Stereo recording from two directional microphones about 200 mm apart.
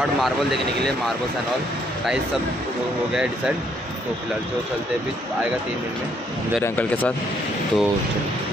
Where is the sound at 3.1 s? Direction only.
5° right (ahead or behind).